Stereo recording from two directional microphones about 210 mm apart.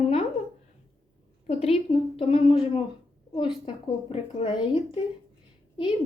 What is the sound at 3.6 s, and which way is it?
Speech, 25° left (ahead or behind).